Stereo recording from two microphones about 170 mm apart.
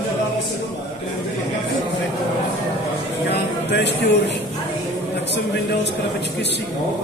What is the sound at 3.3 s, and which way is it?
Speech, 90° left.